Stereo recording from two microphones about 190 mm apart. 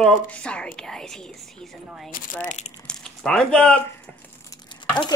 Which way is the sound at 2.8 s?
5° left (ahead or behind).